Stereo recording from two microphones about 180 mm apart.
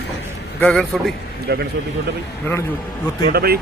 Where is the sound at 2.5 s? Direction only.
10° left (ahead or behind).